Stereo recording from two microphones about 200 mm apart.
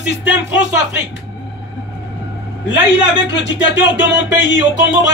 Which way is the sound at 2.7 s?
65° left (ahead or behind).